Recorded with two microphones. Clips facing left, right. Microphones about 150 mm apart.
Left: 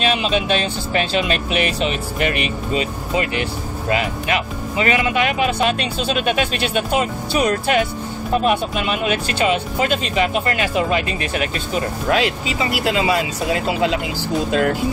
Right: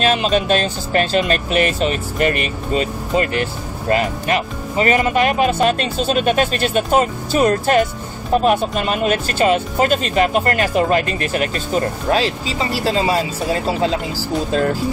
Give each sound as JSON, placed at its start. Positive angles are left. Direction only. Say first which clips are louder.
{"t": 0.0, "sound": "speech", "louder": "right 3 dB", "side_deg": -40}